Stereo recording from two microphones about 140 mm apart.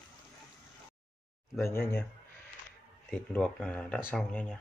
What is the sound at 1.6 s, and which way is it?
Speech, 15° left (ahead or behind).